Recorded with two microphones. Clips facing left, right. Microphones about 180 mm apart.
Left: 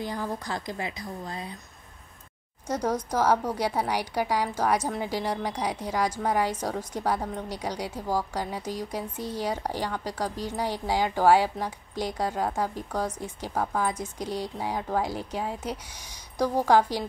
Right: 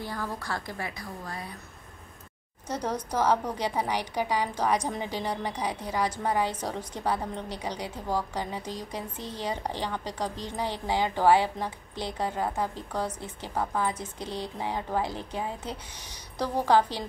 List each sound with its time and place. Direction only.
0.0 s a woman's voice: 15° left (ahead or behind)
2.7 s a woman's voice: 10° left (ahead or behind)